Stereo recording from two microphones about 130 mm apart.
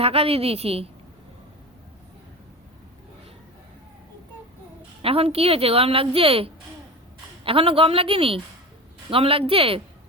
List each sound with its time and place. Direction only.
0.0 s a woman's voice: 50° right (ahead or behind)
5.0 s a woman's voice: 45° right (ahead or behind)